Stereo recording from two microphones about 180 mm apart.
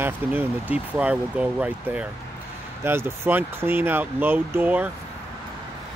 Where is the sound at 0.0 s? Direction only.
10° right (ahead or behind).